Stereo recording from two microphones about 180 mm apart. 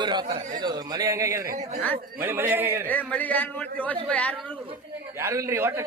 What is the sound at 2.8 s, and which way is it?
A man's voice, 10° left (ahead or behind).